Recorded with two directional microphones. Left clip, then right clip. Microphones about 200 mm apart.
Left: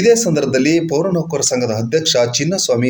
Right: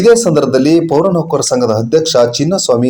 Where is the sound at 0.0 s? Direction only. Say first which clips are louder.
Right 5 dB; 15° right (ahead or behind).